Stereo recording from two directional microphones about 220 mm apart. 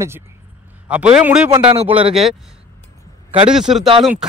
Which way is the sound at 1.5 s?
25° right (ahead or behind).